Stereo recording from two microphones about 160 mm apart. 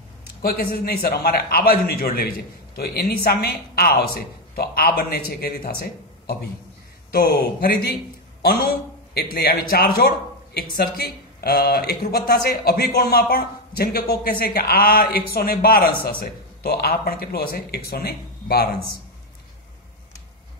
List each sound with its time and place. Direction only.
0.4 s a man's voice: 70° left (ahead or behind)